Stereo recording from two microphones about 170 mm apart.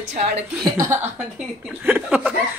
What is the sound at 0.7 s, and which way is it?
Speech, 15° right (ahead or behind).